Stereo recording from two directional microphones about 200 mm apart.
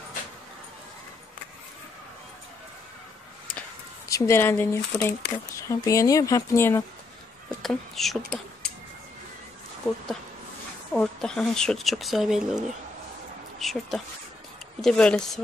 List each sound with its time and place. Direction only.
4.1 s speech: 10° left (ahead or behind)
7.6 s speech: centre (ahead or behind)
10.9 s speech: 5° left (ahead or behind)